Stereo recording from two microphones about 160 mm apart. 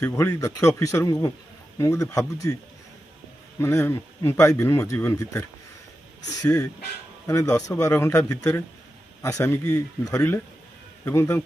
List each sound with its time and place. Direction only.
0.0 s speech: 15° left (ahead or behind)
3.5 s speech: 15° left (ahead or behind)